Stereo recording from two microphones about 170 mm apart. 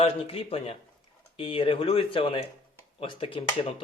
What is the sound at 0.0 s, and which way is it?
Speech, 35° left (ahead or behind).